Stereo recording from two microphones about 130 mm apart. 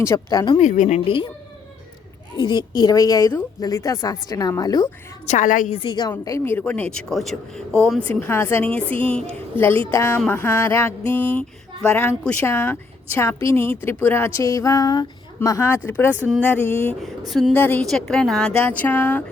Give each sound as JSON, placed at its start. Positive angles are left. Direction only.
{"t": 0.0, "sound": "a woman's voice", "side_deg": 25}
{"t": 0.6, "sound": "a woman's voice", "side_deg": 70}
{"t": 2.4, "sound": "a woman's voice", "side_deg": 35}
{"t": 5.3, "sound": "a woman's voice", "side_deg": 85}
{"t": 5.7, "sound": "speech", "side_deg": 35}
{"t": 8.1, "sound": "speech", "side_deg": 15}
{"t": 9.9, "sound": "a woman's voice", "side_deg": 20}
{"t": 17.0, "sound": "speech", "side_deg": 0}
{"t": 17.5, "sound": "speech", "side_deg": 10}
{"t": 17.8, "sound": "speech", "side_deg": 0}